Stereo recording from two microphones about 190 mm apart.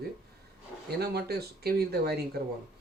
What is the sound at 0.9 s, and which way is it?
Speech, 55° right (ahead or behind).